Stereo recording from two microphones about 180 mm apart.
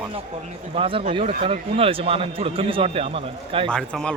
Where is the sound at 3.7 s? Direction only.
5° left (ahead or behind).